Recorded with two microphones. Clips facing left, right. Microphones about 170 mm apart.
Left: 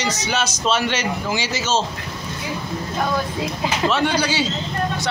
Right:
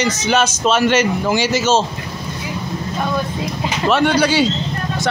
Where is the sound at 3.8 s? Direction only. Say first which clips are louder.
Right 6 dB; 60° right (ahead or behind).